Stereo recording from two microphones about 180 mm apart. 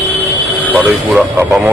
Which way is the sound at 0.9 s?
10° right (ahead or behind).